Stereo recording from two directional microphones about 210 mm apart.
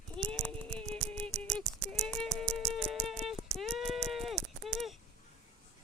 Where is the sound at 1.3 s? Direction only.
35° right (ahead or behind).